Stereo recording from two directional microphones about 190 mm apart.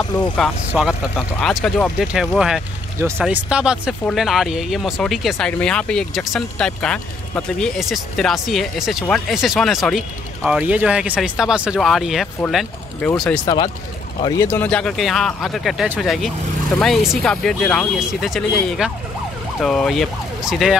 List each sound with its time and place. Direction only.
0.4 s speech: centre (ahead or behind)
13.5 s speech: 20° left (ahead or behind); by 20.7 s centre (ahead or behind)